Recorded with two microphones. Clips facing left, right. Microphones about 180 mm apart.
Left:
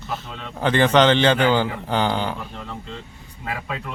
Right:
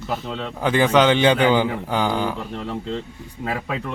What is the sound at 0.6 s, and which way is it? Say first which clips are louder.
A man's voice: even; 10° right (ahead or behind).